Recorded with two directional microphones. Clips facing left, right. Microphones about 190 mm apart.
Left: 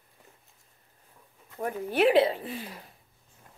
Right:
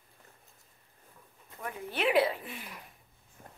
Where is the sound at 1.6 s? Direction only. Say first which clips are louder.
Left 9 dB; 40° left (ahead or behind).